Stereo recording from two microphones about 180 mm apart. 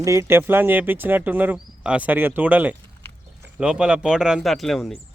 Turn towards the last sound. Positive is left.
turn(degrees=0)  # may be behind; listen again after turning